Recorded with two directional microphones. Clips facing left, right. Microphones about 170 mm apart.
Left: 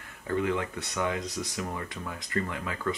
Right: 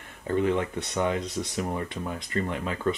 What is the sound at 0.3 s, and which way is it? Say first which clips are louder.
Speech: right 4 dB; 20° right (ahead or behind).